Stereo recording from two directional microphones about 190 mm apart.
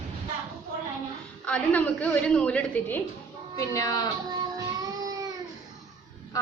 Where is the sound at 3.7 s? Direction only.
20° left (ahead or behind).